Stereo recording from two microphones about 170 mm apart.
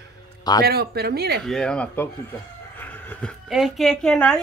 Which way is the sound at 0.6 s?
70° right (ahead or behind).